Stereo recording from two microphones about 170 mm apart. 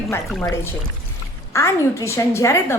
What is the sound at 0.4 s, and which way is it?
A woman's voice, 15° left (ahead or behind).